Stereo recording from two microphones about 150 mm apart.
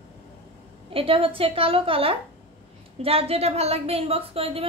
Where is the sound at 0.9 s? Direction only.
40° right (ahead or behind).